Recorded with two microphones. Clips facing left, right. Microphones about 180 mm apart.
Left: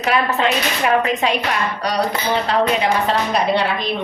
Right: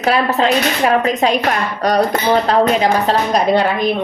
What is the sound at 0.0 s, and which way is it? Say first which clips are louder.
Speech: right 3 dB; 35° right (ahead or behind).